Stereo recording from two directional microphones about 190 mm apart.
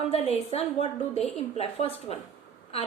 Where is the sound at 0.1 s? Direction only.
35° left (ahead or behind).